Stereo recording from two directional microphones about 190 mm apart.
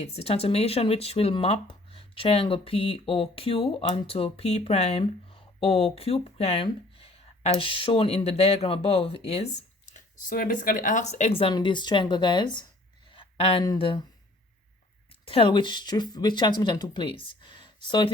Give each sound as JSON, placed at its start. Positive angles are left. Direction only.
{"t": 0.0, "sound": "speech", "side_deg": 35}
{"t": 13.1, "sound": "a sound", "side_deg": 30}
{"t": 13.7, "sound": "speech", "side_deg": 30}
{"t": 15.2, "sound": "speech", "side_deg": 30}